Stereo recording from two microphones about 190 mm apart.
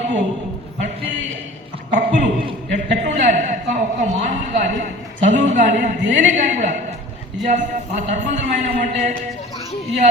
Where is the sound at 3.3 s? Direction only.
40° right (ahead or behind).